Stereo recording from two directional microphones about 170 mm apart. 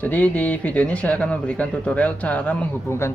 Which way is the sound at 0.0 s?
10° left (ahead or behind).